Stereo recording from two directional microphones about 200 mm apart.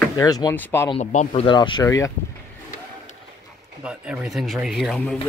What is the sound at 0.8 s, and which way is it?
Speech, 35° left (ahead or behind).